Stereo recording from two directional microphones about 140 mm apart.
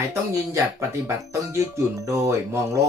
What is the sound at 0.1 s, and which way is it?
Speech, 20° right (ahead or behind).